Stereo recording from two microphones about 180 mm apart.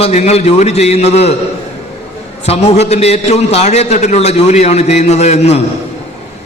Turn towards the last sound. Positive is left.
turn(degrees=35)  # may be behind; listen again after turning